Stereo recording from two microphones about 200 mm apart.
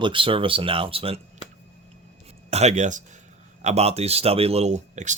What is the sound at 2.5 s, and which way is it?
Speech, 35° right (ahead or behind).